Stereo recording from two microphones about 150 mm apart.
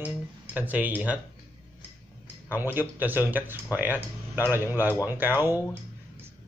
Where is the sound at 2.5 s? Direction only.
15° right (ahead or behind).